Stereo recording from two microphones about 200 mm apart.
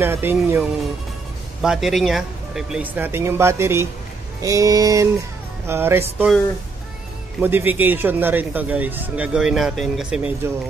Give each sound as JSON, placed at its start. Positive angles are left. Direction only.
{"t": 0.0, "sound": "a man's voice", "side_deg": -10}
{"t": 7.3, "sound": "a man's voice", "side_deg": -10}